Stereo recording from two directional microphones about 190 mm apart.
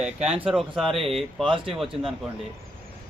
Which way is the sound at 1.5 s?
25° right (ahead or behind).